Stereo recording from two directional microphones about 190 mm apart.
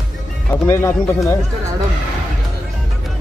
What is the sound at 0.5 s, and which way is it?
Speech, 15° left (ahead or behind).